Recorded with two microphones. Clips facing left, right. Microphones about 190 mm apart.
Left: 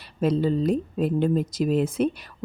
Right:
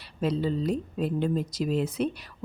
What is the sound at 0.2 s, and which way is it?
Speech, 50° left (ahead or behind).